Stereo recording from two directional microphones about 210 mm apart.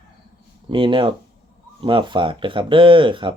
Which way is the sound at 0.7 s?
25° right (ahead or behind).